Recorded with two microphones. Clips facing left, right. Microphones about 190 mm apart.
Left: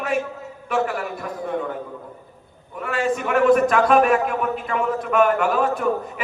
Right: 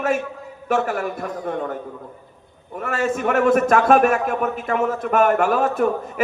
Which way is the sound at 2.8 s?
45° right (ahead or behind).